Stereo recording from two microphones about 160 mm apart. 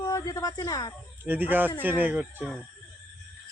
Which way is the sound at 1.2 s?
10° right (ahead or behind).